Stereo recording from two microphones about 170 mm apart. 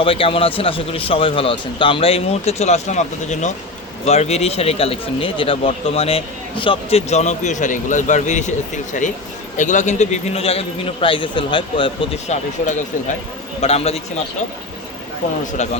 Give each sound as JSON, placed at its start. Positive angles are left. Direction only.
{"t": 0.0, "sound": "speech", "side_deg": 35}
{"t": 12.3, "sound": "speech", "side_deg": 45}
{"t": 15.5, "sound": "speech", "side_deg": 45}